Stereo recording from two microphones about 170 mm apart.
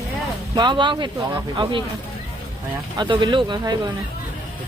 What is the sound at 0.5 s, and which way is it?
Speech, 25° right (ahead or behind).